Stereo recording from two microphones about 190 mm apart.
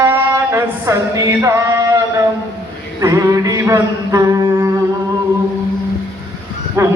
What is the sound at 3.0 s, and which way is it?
Mantra, 20° right (ahead or behind).